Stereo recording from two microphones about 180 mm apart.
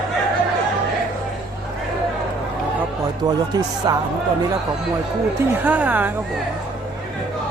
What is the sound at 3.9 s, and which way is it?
Speech, 20° right (ahead or behind).